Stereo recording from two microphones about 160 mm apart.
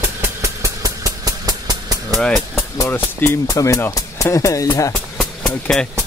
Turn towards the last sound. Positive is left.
turn(degrees=5)  # may be behind; listen again after turning